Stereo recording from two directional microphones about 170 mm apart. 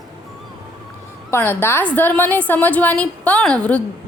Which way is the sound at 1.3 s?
10° left (ahead or behind).